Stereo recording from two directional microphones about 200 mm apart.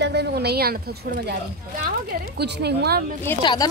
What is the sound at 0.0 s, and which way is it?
A woman's voice, 55° right (ahead or behind).